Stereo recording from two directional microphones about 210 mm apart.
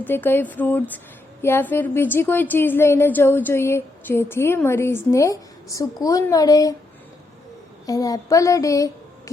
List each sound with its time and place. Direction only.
0.0 s a woman's voice: 10° left (ahead or behind)
7.9 s speech: 15° left (ahead or behind)